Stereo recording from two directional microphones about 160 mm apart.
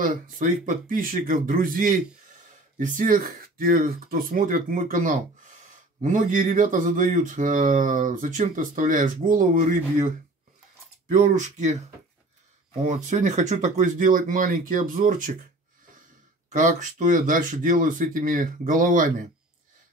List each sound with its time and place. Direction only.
0.0 s speech: 55° right (ahead or behind)
12.8 s speech: 45° right (ahead or behind)
16.4 s speech: 50° right (ahead or behind)